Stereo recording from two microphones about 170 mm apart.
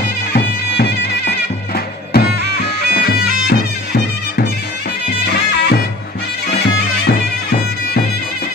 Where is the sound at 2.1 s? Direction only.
70° left (ahead or behind).